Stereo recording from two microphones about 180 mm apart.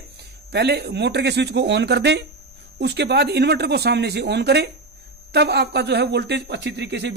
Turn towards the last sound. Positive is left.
turn(degrees=-70)  # may be behind; listen again after turning